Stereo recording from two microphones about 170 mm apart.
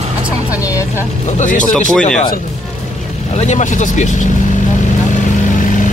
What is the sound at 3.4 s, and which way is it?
Speech, 45° left (ahead or behind).